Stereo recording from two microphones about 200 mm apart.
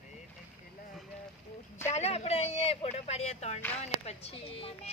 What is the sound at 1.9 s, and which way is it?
A child's voice, 30° left (ahead or behind).